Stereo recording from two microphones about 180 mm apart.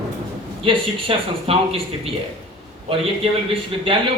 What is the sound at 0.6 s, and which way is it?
Speech, 30° right (ahead or behind).